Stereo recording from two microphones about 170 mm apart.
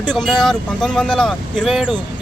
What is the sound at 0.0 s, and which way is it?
Speech, centre (ahead or behind).